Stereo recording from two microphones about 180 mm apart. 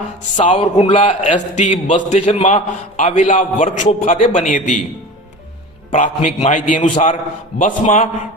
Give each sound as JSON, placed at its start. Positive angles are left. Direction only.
{"t": 0.5, "sound": "speech", "side_deg": 25}
{"t": 0.9, "sound": "a man's voice", "side_deg": 40}
{"t": 5.9, "sound": "a man's voice", "side_deg": 40}